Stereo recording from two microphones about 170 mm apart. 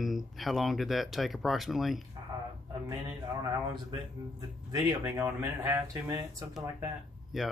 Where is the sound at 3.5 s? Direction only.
25° right (ahead or behind).